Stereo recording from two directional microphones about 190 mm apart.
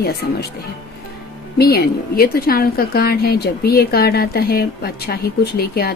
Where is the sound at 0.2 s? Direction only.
55° left (ahead or behind).